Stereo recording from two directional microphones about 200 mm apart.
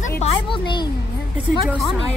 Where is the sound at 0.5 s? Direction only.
20° left (ahead or behind).